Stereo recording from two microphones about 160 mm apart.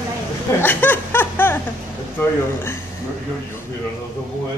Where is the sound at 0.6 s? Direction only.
10° left (ahead or behind).